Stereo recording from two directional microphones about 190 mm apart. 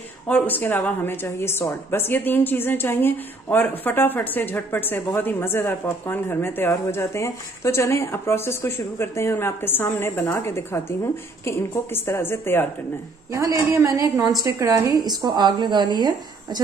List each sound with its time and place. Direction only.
0.3 s a woman's voice: 10° left (ahead or behind)
13.3 s a woman's voice: 15° right (ahead or behind)